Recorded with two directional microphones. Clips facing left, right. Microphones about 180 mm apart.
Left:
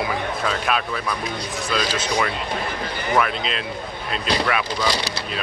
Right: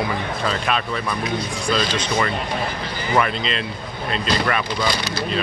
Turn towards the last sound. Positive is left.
turn(degrees=5)  # may be behind; listen again after turning